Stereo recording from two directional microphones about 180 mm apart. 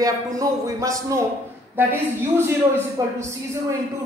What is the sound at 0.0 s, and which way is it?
A man's voice, 20° right (ahead or behind).